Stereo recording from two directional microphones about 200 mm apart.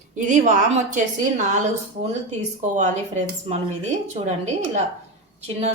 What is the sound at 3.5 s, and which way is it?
Speech, 35° right (ahead or behind).